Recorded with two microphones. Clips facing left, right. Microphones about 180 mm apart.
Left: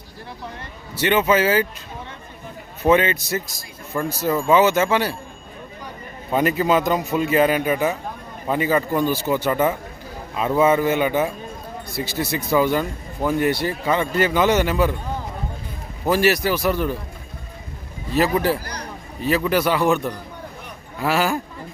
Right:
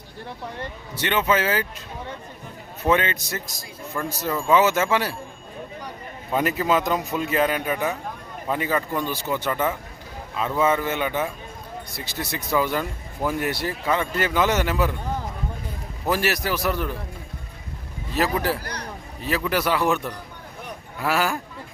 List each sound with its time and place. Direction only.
0.9 s a man's voice: 5° left (ahead or behind)
2.9 s speech: 5° left (ahead or behind)
6.3 s a man's voice: centre (ahead or behind)
16.0 s speech: centre (ahead or behind)
18.1 s speech: centre (ahead or behind)